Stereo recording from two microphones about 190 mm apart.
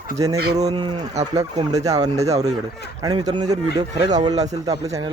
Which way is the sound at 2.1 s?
35° right (ahead or behind).